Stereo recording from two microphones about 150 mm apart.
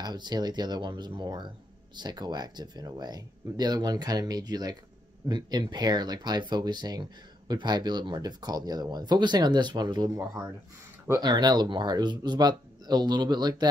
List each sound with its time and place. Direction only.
0.0 s speech: 30° right (ahead or behind)